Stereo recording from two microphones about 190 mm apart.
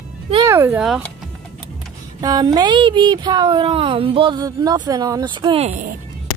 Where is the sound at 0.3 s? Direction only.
20° right (ahead or behind).